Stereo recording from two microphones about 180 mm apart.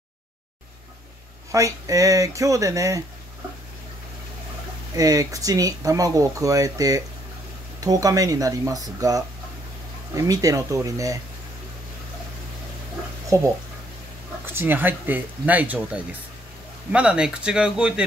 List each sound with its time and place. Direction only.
1.5 s speech: 20° right (ahead or behind)
4.9 s speech: 20° right (ahead or behind)
13.3 s speech: 15° right (ahead or behind)